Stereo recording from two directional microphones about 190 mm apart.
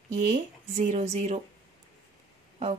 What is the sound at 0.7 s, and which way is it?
Speech, 40° right (ahead or behind).